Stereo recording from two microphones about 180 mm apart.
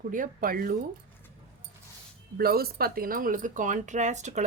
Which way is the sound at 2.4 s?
60° right (ahead or behind).